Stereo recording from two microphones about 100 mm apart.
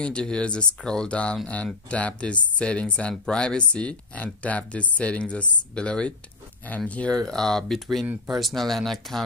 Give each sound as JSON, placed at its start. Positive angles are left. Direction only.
{"t": 0.0, "sound": "speech", "side_deg": 10}
{"t": 7.2, "sound": "speech", "side_deg": 5}